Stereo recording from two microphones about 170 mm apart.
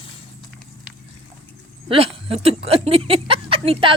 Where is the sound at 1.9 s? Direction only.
35° right (ahead or behind).